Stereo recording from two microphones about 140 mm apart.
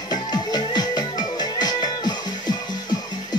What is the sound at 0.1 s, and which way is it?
Music, 30° left (ahead or behind).